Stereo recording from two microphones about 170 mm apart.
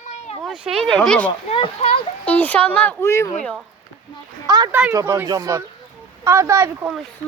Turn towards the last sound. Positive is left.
turn(degrees=-15)  # may be behind; listen again after turning